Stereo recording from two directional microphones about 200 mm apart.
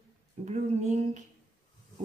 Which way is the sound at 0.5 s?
35° right (ahead or behind).